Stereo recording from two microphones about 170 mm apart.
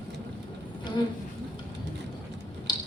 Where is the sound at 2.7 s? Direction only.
25° left (ahead or behind).